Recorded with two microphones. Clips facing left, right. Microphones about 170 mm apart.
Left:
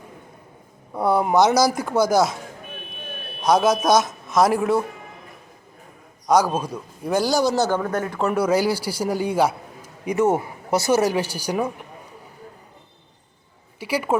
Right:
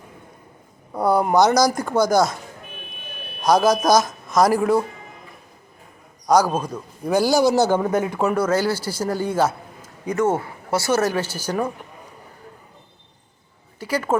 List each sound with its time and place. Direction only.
0.9 s speech: centre (ahead or behind)
3.4 s speech: centre (ahead or behind)
6.2 s a man's voice: centre (ahead or behind)
8.4 s a man's voice: 10° left (ahead or behind)
13.7 s speech: 10° left (ahead or behind)